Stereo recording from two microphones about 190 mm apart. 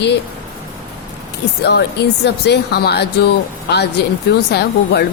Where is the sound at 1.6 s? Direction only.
60° left (ahead or behind).